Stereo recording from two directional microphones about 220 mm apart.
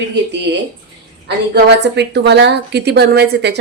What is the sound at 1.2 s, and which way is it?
A woman's voice, 50° right (ahead or behind).